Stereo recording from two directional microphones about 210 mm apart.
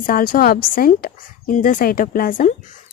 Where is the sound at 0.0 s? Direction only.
40° left (ahead or behind).